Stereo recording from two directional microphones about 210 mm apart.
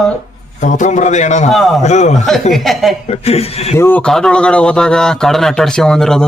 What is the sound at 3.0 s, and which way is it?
Speech, 30° left (ahead or behind).